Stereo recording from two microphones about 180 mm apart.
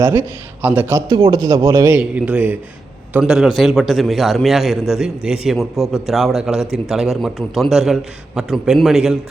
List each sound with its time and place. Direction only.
0.0 s a man's voice: 20° right (ahead or behind)
0.6 s a man's voice: 10° right (ahead or behind)